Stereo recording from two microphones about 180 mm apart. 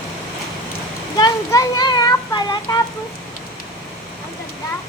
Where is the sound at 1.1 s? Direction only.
20° left (ahead or behind).